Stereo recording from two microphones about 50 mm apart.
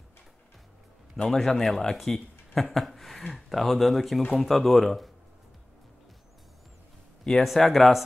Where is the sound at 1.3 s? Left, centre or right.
Centre.